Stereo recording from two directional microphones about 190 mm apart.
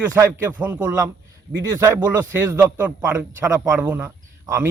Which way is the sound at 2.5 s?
10° right (ahead or behind).